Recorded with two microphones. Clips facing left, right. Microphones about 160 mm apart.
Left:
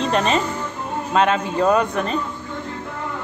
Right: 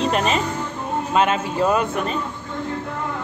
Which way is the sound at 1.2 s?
5° right (ahead or behind).